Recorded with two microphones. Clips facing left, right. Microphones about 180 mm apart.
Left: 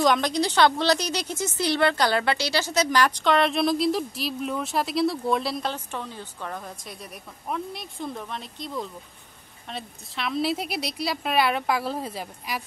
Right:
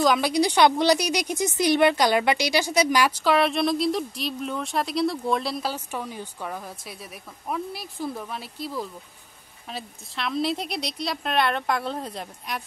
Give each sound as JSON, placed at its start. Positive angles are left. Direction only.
{"t": 0.0, "sound": "a woman's voice", "side_deg": -5}